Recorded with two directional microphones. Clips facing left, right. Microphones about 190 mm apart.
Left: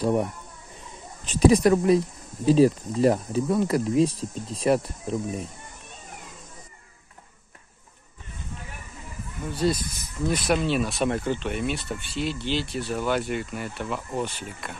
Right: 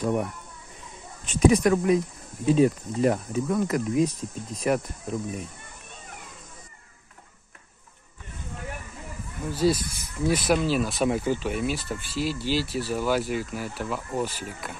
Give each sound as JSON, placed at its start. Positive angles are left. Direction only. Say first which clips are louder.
{"t": 0.0, "sound": "speech", "louder": "left 2 dB", "side_deg": 30}
{"t": 9.5, "sound": "speech", "louder": "right 2 dB", "side_deg": 0}